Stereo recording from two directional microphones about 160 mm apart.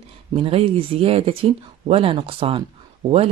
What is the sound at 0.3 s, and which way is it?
Speech, 35° right (ahead or behind).